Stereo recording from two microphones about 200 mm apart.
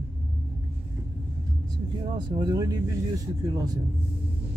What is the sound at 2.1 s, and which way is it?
Speech, 20° right (ahead or behind).